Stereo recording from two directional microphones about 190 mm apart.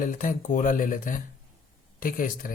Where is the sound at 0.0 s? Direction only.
45° left (ahead or behind).